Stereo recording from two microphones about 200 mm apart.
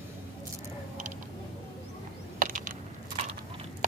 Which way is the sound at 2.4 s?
40° right (ahead or behind).